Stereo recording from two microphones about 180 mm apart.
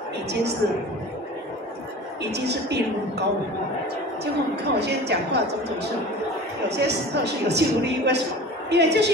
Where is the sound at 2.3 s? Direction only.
65° right (ahead or behind).